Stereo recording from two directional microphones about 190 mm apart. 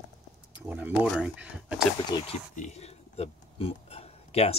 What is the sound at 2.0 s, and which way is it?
Speech, 20° left (ahead or behind).